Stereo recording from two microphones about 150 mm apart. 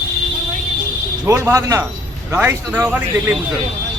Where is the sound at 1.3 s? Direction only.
20° right (ahead or behind).